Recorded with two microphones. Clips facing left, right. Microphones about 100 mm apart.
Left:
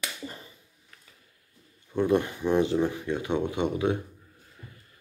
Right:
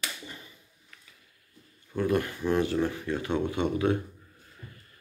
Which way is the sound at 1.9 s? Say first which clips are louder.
Left 3 dB; 20° left (ahead or behind).